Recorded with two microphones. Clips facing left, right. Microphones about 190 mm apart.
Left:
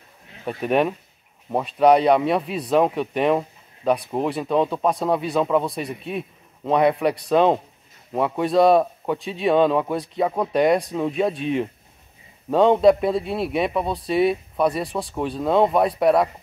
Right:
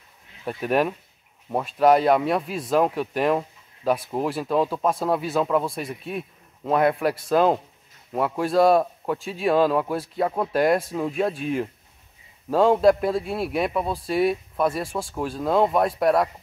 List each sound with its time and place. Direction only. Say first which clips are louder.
0.5 s a man's voice: left 2 dB; centre (ahead or behind)